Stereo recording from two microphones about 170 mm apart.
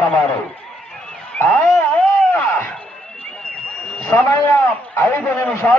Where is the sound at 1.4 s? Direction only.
10° left (ahead or behind).